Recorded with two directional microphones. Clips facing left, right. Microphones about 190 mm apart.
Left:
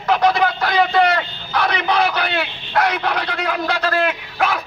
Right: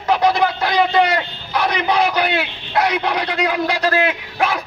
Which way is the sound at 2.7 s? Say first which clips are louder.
Right 1 dB; 10° right (ahead or behind).